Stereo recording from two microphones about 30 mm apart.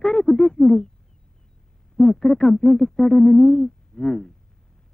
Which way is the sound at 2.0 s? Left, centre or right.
Centre.